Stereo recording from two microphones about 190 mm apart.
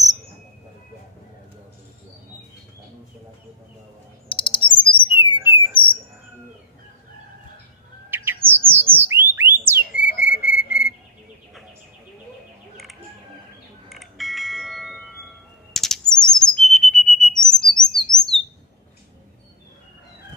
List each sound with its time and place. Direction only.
4.3 s chirp: 25° left (ahead or behind)
5.3 s bird: 15° right (ahead or behind)
8.1 s bird: 10° right (ahead or behind)
9.3 s a sound: 10° right (ahead or behind)
9.8 s a sound: 65° right (ahead or behind)
10.4 s whistle: 50° left (ahead or behind)
13.8 s bell: centre (ahead or behind)